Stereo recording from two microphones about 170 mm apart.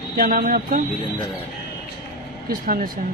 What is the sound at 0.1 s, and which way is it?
Speech, 60° right (ahead or behind).